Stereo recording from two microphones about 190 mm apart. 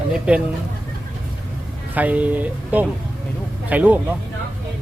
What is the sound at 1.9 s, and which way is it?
Speech, 10° right (ahead or behind).